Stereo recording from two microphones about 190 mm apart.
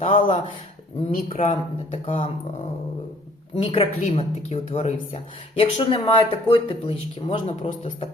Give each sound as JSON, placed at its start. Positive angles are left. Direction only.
{"t": 0.0, "sound": "speech", "side_deg": 30}
{"t": 1.4, "sound": "speech", "side_deg": 30}
{"t": 3.5, "sound": "speech", "side_deg": 30}